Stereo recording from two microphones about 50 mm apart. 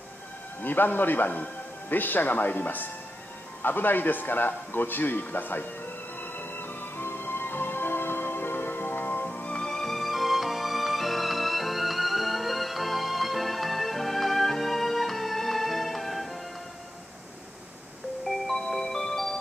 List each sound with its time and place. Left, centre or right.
0.6 s a man's voice: left
3.6 s music: left
9.5 s music: centre
18.2 s music: centre